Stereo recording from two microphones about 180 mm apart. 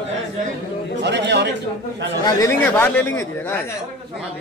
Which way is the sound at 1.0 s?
75° right (ahead or behind).